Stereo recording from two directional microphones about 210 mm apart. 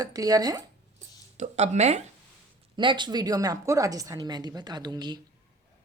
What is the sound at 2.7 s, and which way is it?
A woman's voice, 20° right (ahead or behind).